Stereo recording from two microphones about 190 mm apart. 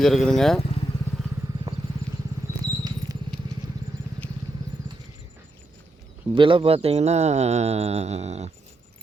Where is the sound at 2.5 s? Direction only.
15° right (ahead or behind).